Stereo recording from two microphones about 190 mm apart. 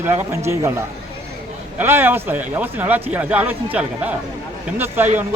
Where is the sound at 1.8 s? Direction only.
10° right (ahead or behind).